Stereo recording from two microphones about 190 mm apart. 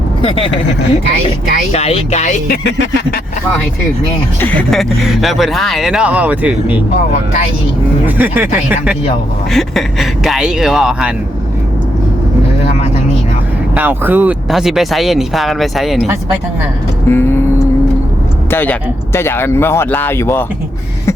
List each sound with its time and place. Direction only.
0.2 s speech: 30° left (ahead or behind)
1.7 s speech: 30° left (ahead or behind)
2.6 s a sound: 70° left (ahead or behind)
4.4 s speech: 10° left (ahead or behind); by 6.8 s 10° right (ahead or behind)
8.0 s speech: 10° right (ahead or behind)
9.5 s speech: centre (ahead or behind)
13.7 s speech: 10° right (ahead or behind)
17.1 s speech: 10° left (ahead or behind)
18.5 s speech: 10° left (ahead or behind)